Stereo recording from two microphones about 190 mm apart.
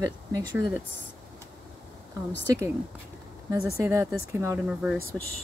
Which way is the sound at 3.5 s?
15° right (ahead or behind).